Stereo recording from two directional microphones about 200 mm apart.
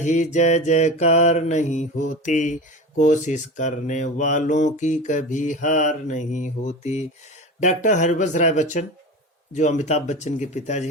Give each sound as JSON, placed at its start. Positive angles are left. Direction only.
{"t": 0.0, "sound": "mantra", "side_deg": 40}